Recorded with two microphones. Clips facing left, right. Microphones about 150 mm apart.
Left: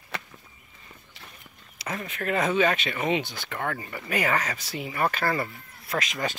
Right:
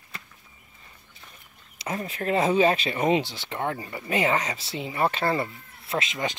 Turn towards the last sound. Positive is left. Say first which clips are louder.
# right 1 dB
turn(degrees=-25)  # may be behind; listen again after turning